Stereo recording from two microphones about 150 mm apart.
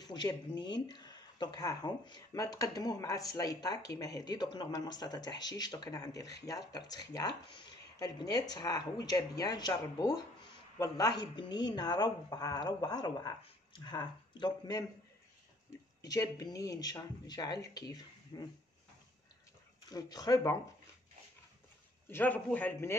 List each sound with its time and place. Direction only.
0.0 s speech: 30° left (ahead or behind)
16.0 s speech: 25° left (ahead or behind)
19.9 s speech: 25° left (ahead or behind)
22.0 s a man's voice: 10° left (ahead or behind)